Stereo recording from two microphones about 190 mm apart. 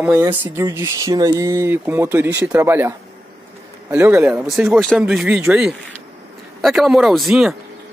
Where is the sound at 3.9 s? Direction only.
10° right (ahead or behind).